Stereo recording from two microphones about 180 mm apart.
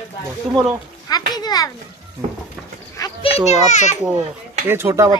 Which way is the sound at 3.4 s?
40° left (ahead or behind).